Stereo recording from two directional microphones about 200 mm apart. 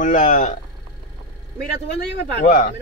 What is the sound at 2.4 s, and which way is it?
Speech, 40° left (ahead or behind).